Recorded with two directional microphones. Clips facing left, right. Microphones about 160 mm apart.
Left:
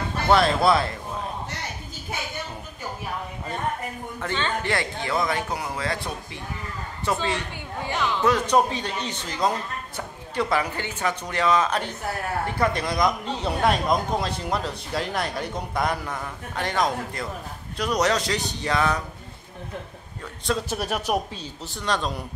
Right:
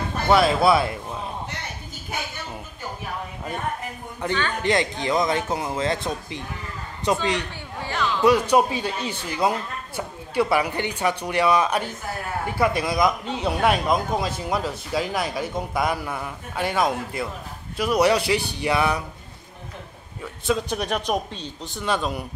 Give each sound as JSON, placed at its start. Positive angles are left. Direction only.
{"t": 0.3, "sound": "speech", "side_deg": -5}
{"t": 4.2, "sound": "speech", "side_deg": -15}
{"t": 7.8, "sound": "a sound", "side_deg": 15}
{"t": 8.2, "sound": "speech", "side_deg": -10}
{"t": 20.4, "sound": "speech", "side_deg": 0}